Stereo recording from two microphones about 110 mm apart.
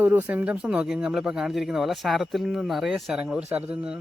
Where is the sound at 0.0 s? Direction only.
20° right (ahead or behind).